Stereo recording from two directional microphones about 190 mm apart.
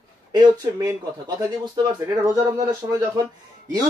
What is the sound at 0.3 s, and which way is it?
Speech, 20° right (ahead or behind).